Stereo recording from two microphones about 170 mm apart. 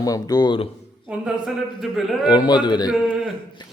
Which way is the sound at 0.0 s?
20° left (ahead or behind).